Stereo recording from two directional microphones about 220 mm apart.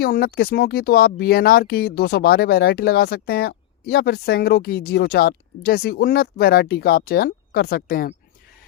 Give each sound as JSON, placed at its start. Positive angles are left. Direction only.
{"t": 0.0, "sound": "speech", "side_deg": 45}